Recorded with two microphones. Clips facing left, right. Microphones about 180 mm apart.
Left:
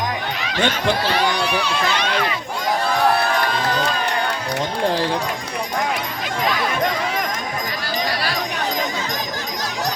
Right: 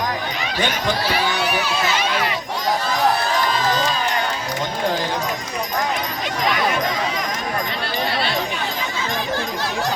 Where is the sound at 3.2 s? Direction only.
60° left (ahead or behind).